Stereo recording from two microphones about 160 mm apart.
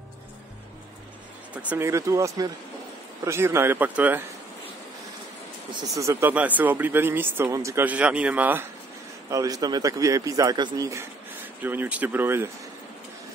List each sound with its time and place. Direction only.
1.5 s a man's voice: 10° right (ahead or behind)
5.7 s speech: 20° right (ahead or behind)
9.3 s a man's voice: 20° right (ahead or behind)